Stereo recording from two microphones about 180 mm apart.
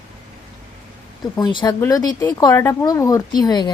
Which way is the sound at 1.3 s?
25° left (ahead or behind).